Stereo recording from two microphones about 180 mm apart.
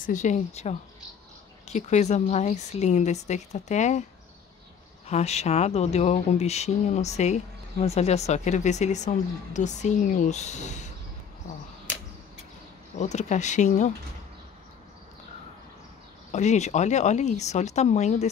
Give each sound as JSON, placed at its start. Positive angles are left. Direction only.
{"t": 0.0, "sound": "speech", "side_deg": 40}
{"t": 5.0, "sound": "speech", "side_deg": 35}
{"t": 12.9, "sound": "speech", "side_deg": 40}
{"t": 16.3, "sound": "speech", "side_deg": 40}